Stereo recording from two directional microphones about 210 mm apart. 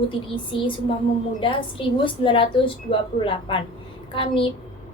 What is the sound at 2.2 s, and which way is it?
A woman's voice, 25° left (ahead or behind).